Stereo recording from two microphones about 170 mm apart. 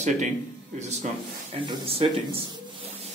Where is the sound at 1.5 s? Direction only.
35° right (ahead or behind).